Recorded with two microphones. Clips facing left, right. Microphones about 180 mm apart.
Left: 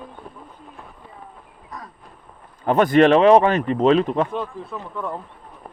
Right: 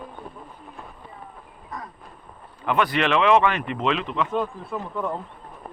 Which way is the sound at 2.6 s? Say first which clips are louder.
Left 8 dB; 45° left (ahead or behind).